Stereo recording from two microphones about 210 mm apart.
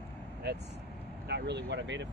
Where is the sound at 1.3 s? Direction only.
55° right (ahead or behind).